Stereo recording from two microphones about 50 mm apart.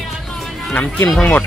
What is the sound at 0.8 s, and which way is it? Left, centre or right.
Speech, left.